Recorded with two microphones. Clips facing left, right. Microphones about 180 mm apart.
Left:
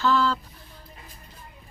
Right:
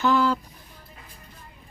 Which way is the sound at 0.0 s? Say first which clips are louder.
Right 2 dB; 15° right (ahead or behind).